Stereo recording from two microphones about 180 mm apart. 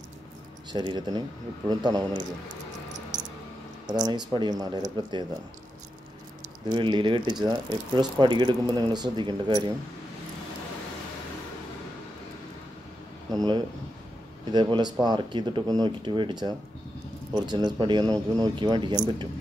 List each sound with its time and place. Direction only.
0.7 s speech: 25° right (ahead or behind)
3.1 s a sound: 45° right (ahead or behind)
3.8 s speech: 25° right (ahead or behind)
6.7 s speech: 25° right (ahead or behind)
14.5 s speech: 25° right (ahead or behind)